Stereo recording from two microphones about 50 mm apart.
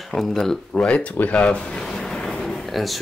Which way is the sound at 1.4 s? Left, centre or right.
Centre.